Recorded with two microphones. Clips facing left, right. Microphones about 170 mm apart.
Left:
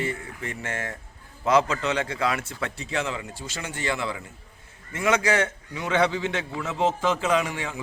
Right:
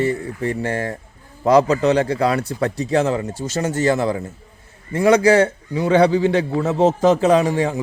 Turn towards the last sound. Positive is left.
turn(degrees=-40)  # may be behind; listen again after turning